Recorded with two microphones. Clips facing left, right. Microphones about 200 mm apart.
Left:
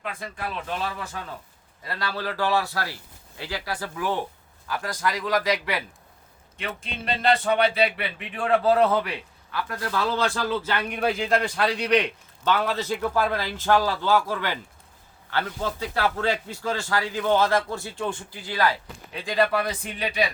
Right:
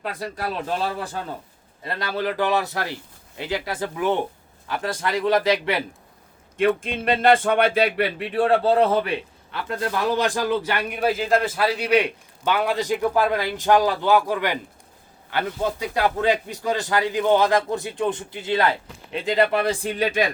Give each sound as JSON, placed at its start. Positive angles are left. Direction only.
{"t": 0.0, "sound": "speech", "side_deg": -40}
{"t": 1.8, "sound": "a man's voice", "side_deg": -20}
{"t": 6.6, "sound": "speech", "side_deg": -50}
{"t": 20.0, "sound": "speech", "side_deg": -45}